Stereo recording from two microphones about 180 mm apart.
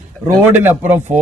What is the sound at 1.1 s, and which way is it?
Speech, 40° right (ahead or behind).